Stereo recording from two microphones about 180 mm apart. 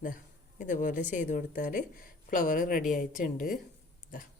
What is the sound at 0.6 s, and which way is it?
Speech, 45° left (ahead or behind).